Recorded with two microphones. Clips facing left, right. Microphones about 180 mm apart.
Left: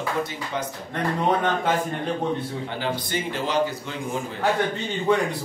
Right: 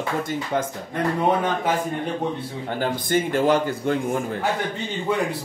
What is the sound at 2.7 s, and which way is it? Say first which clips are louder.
A man's voice: right 8 dB; 50° right (ahead or behind).